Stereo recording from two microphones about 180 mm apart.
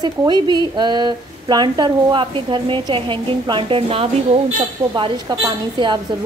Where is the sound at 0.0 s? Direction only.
25° right (ahead or behind).